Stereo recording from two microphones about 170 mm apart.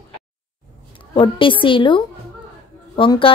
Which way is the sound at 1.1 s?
30° left (ahead or behind).